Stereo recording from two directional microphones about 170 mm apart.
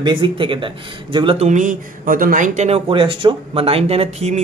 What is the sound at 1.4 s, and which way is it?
Speech, 45° right (ahead or behind).